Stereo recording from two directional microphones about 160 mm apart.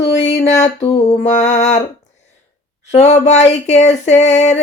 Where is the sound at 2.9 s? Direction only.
45° left (ahead or behind).